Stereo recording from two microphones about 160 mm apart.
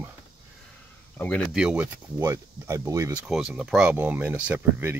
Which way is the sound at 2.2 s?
20° right (ahead or behind).